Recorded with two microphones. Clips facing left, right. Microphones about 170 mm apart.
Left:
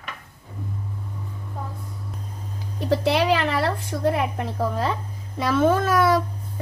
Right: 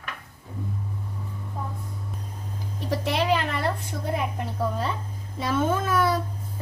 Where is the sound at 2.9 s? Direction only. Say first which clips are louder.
Left 4 dB; 90° left.